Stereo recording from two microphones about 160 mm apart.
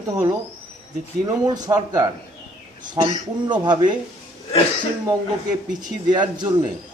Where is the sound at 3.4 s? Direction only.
30° right (ahead or behind).